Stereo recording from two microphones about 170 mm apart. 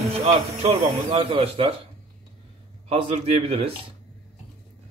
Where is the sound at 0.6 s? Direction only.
35° right (ahead or behind).